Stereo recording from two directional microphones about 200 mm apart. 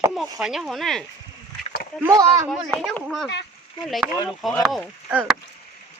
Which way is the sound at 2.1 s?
15° right (ahead or behind).